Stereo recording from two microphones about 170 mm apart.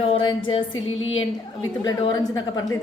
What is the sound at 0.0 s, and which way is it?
Music, 30° left (ahead or behind).